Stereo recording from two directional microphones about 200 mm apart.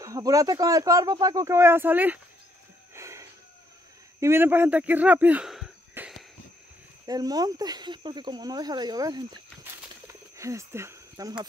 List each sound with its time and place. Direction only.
0.0 s speech: 15° right (ahead or behind)
2.9 s a sound: 15° right (ahead or behind)
4.2 s speech: 10° right (ahead or behind)
7.1 s speech: 20° right (ahead or behind)